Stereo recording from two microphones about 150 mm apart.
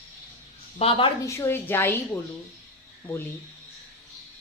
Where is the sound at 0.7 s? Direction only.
40° left (ahead or behind).